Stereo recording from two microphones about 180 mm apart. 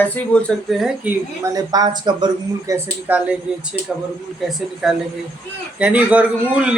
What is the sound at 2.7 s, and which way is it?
Speech, 10° right (ahead or behind).